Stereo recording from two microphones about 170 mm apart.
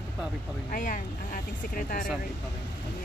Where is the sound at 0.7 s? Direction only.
50° left (ahead or behind).